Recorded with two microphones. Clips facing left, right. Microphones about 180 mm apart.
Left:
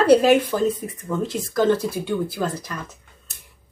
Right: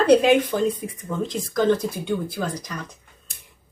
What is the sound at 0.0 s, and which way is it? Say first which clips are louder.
Speech: left 1 dB; 5° left (ahead or behind).